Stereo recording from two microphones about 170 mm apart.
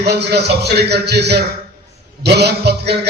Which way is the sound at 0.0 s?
75° right (ahead or behind).